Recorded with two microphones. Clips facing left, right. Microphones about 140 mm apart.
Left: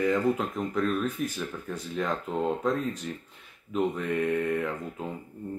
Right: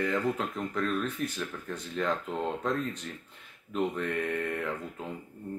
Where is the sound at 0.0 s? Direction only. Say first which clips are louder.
Left 4 dB; 5° left (ahead or behind).